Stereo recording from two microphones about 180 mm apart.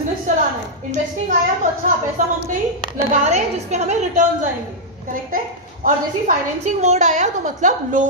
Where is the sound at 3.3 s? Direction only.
40° right (ahead or behind).